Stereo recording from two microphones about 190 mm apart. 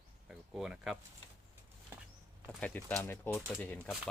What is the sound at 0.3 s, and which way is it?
Speech, 5° right (ahead or behind).